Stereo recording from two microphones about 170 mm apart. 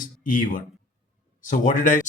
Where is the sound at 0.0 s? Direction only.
50° left (ahead or behind).